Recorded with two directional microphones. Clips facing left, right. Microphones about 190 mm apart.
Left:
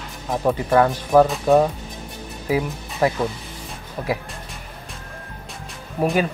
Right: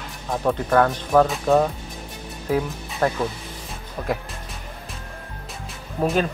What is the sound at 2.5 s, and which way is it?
Speech, 10° left (ahead or behind).